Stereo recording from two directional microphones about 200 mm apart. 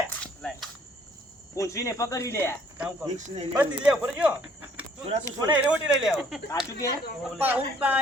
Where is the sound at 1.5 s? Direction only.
15° left (ahead or behind).